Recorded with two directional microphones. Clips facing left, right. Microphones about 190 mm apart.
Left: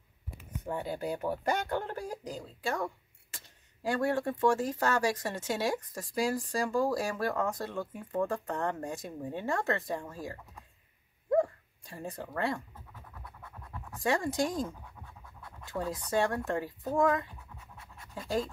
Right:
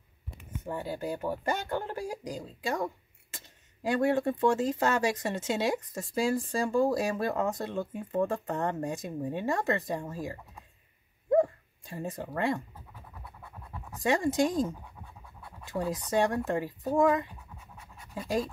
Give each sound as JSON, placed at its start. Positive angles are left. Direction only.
{"t": 0.7, "sound": "speech", "side_deg": 0}
{"t": 11.2, "sound": "dog", "side_deg": -20}
{"t": 12.4, "sound": "scratch", "side_deg": -20}
{"t": 15.8, "sound": "speech", "side_deg": -20}